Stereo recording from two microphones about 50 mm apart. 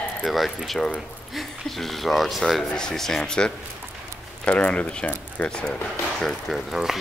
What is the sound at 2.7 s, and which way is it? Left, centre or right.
A man's voice, centre.